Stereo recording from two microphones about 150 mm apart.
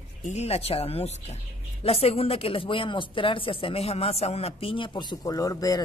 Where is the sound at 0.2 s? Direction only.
50° left (ahead or behind).